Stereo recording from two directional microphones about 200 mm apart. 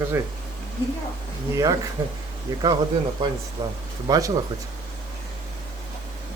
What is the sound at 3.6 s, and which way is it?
Speech, 15° right (ahead or behind).